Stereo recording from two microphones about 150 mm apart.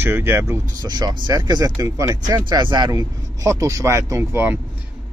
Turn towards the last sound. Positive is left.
turn(degrees=-15)  # may be behind; listen again after turning